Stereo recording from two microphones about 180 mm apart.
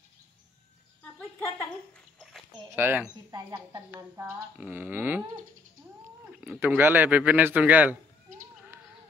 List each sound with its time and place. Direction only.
2.7 s speech: 10° right (ahead or behind)
6.4 s speech: 10° right (ahead or behind)